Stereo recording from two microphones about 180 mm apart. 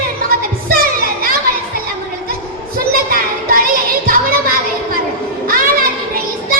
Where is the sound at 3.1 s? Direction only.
55° right (ahead or behind).